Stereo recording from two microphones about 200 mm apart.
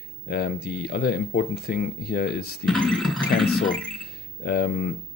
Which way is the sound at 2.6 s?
5° left (ahead or behind).